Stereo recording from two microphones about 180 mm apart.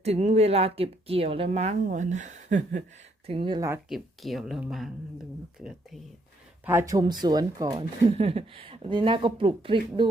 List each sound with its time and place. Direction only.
0.0 s speech: 35° right (ahead or behind)
3.2 s speech: 30° right (ahead or behind)
3.8 s speech: centre (ahead or behind)
6.7 s speech: 15° right (ahead or behind)